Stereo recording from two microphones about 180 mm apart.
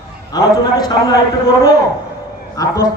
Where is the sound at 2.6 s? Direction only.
20° left (ahead or behind).